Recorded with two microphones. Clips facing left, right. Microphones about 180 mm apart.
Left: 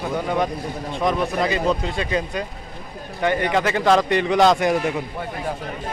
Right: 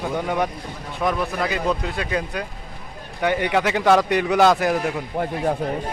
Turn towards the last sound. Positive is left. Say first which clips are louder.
# left 1 dB
turn(degrees=-5)  # may be behind; listen again after turning